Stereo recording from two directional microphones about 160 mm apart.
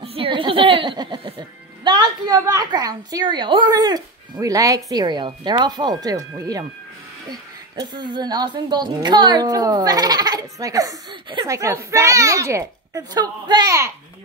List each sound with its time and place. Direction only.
0.0 s a sound: 35° right (ahead or behind)
1.9 s a woman's voice: 25° right (ahead or behind)
7.9 s speech: 30° right (ahead or behind)